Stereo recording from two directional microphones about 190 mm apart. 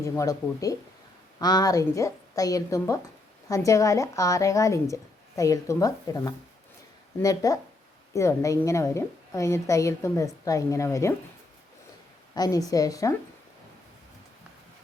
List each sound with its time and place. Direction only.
0.0 s a woman's voice: 15° left (ahead or behind)
12.3 s a woman's voice: 20° left (ahead or behind)